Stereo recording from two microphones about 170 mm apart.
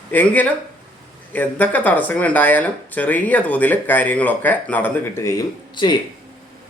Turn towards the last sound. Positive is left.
turn(degrees=25)  # may be behind; listen again after turning